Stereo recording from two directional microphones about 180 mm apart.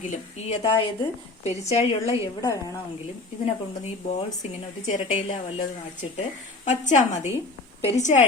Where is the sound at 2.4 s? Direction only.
20° left (ahead or behind).